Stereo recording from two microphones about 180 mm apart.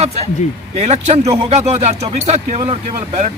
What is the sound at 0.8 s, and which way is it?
Speech, 40° right (ahead or behind).